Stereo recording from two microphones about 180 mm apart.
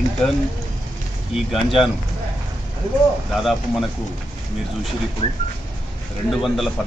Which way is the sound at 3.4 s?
Centre (ahead or behind).